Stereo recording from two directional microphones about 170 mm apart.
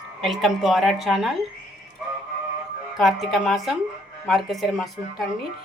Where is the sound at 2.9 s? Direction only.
Centre (ahead or behind).